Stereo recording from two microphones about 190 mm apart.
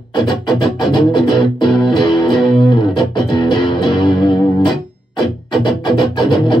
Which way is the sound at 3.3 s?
25° left (ahead or behind).